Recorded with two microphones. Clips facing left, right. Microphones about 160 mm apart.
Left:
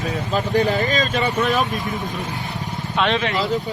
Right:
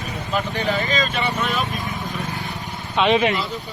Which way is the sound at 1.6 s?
Centre (ahead or behind).